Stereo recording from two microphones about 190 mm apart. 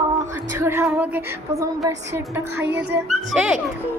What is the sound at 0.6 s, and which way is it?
A child's voice, 15° right (ahead or behind).